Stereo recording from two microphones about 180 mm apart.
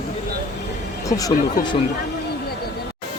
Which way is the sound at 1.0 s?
20° left (ahead or behind).